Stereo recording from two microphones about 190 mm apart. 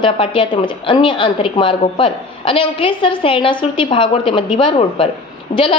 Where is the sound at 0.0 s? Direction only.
30° left (ahead or behind).